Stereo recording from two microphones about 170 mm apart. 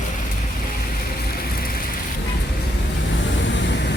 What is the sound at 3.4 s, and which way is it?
Vehicle, 90° left.